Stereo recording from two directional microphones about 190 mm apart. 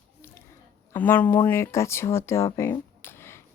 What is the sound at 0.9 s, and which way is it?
Speech, 10° left (ahead or behind).